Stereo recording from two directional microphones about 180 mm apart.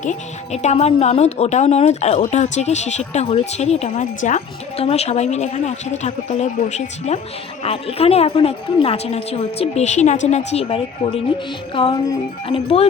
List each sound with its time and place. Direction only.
0.0 s speech: 40° left (ahead or behind)
11.7 s music: 30° left (ahead or behind)
12.5 s speech: 30° left (ahead or behind)